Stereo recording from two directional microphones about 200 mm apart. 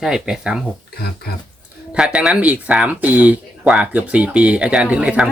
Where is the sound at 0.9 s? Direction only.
50° left (ahead or behind).